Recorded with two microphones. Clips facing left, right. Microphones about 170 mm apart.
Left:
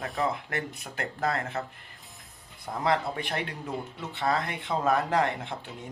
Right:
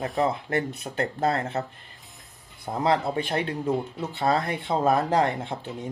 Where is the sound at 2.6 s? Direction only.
30° right (ahead or behind).